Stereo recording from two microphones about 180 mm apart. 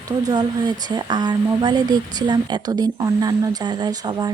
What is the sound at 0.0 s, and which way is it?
Speech, 20° right (ahead or behind).